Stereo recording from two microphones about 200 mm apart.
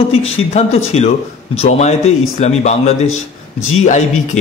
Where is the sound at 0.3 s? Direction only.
30° left (ahead or behind).